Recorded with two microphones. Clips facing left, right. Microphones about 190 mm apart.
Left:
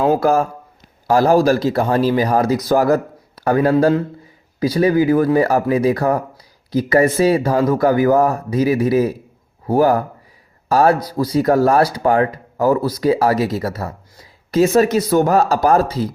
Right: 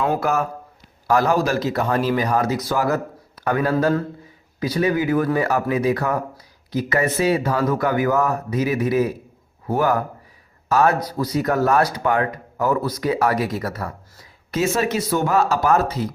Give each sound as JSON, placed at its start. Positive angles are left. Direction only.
{"t": 0.0, "sound": "speech", "side_deg": 30}